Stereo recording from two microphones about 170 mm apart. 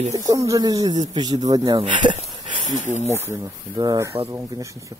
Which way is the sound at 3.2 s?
15° right (ahead or behind).